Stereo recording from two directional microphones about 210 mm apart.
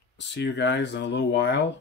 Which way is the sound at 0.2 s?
55° left (ahead or behind).